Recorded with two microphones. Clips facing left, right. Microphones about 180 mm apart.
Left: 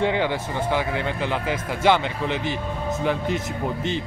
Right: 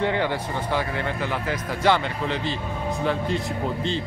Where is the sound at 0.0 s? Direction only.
15° left (ahead or behind).